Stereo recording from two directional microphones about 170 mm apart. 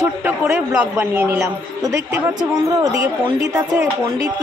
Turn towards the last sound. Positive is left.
turn(degrees=-15)  # may be behind; listen again after turning